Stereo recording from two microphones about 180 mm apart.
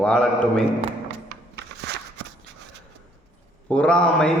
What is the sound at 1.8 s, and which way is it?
Walk, 70° right (ahead or behind).